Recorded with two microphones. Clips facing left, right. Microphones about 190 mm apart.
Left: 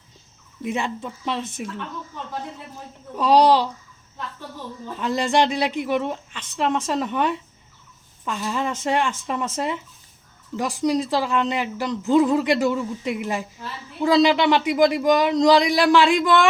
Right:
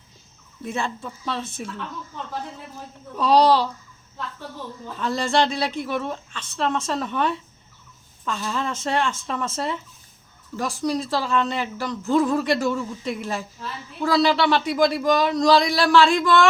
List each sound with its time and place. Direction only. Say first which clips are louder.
0.6 s a woman's voice: left 2 dB; 15° left (ahead or behind)
3.2 s a woman's voice: left 1 dB; 15° left (ahead or behind)
4.9 s a woman's voice: left 1 dB; 15° left (ahead or behind)